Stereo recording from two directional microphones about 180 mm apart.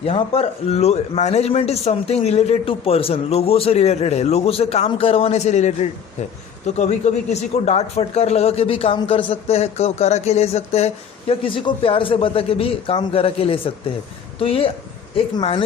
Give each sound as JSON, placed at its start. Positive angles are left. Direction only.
{"t": 0.0, "sound": "a man's voice", "side_deg": 35}